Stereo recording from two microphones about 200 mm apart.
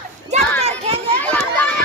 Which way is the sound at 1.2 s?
5° left (ahead or behind).